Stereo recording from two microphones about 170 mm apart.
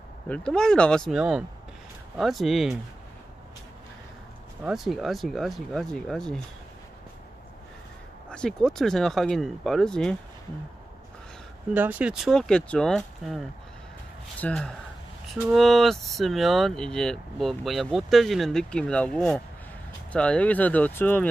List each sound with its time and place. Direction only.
0.3 s speech: 5° left (ahead or behind)
4.6 s speech: centre (ahead or behind)
8.3 s speech: 5° left (ahead or behind)
11.7 s speech: 10° right (ahead or behind)
14.4 s speech: 5° left (ahead or behind)